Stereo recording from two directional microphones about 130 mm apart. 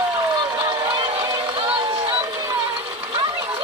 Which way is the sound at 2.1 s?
25° right (ahead or behind).